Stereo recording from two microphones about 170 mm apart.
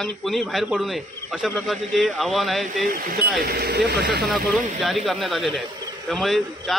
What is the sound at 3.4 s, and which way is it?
Speech, 65° right (ahead or behind).